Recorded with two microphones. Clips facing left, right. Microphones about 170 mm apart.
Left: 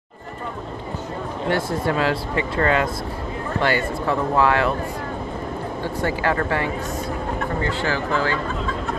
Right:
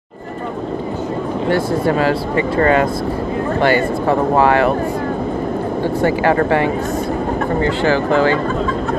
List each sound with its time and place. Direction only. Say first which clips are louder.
2.6 s speech: right 6 dB; 55° right (ahead or behind)
6.0 s speech: right 7 dB; 65° right (ahead or behind)